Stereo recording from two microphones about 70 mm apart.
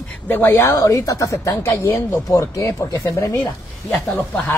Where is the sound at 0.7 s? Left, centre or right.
Left.